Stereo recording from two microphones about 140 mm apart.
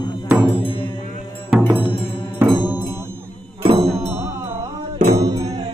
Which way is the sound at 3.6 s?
45° right (ahead or behind).